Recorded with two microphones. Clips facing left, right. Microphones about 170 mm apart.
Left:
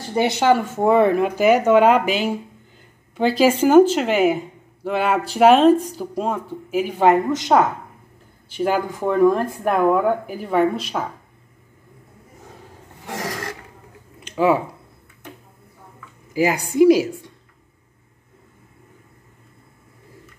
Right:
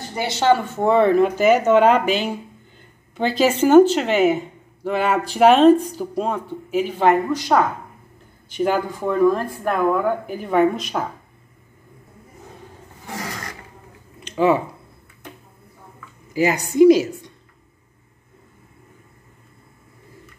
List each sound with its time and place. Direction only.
0.1 s speech: 20° left (ahead or behind)
0.5 s speech: 10° left (ahead or behind)
7.1 s a woman's voice: 20° left (ahead or behind)
8.5 s speech: 5° left (ahead or behind)
9.0 s speech: 15° left (ahead or behind)
10.2 s speech: 5° left (ahead or behind)
14.2 s a sound: 5° left (ahead or behind)
16.3 s speech: 10° left (ahead or behind)